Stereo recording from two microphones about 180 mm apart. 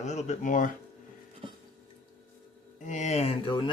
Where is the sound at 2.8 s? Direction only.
40° left (ahead or behind).